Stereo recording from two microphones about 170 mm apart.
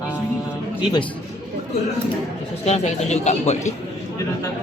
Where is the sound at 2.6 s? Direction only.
40° left (ahead or behind).